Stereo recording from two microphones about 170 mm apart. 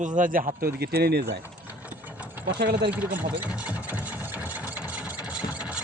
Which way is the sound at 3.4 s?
5° right (ahead or behind).